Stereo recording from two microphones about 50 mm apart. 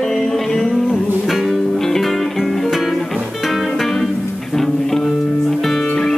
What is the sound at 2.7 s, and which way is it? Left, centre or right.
Music, centre.